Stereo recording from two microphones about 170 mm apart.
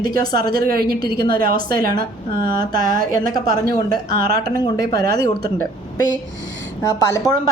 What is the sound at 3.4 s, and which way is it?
Speech, 60° right (ahead or behind).